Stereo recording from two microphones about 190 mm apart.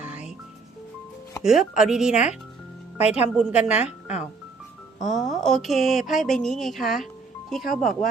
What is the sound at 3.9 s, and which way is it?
Speech, 35° left (ahead or behind).